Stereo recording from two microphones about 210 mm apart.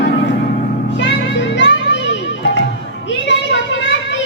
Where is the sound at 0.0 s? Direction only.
55° left (ahead or behind).